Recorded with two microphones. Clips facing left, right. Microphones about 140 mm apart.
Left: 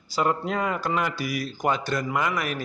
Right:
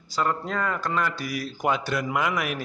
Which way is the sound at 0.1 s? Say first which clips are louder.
Left 2 dB; 15° left (ahead or behind).